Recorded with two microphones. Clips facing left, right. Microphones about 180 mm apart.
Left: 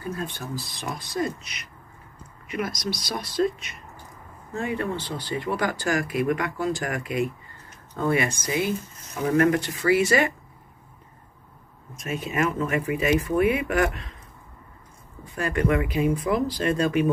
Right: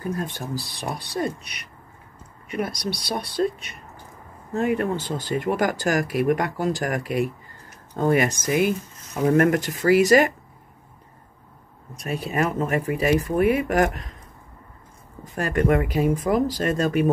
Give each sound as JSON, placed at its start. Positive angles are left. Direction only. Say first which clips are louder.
{"t": 0.6, "sound": "speech", "louder": "right 3 dB", "side_deg": -35}
{"t": 2.8, "sound": "speech", "louder": "right 2 dB", "side_deg": -60}
{"t": 3.4, "sound": "speech", "louder": "even", "side_deg": -40}
{"t": 4.6, "sound": "speech", "louder": "right 5 dB", "side_deg": -45}
{"t": 11.9, "sound": "speech", "louder": "right 2 dB", "side_deg": -35}
{"t": 15.3, "sound": "speech", "louder": "right 3 dB", "side_deg": -40}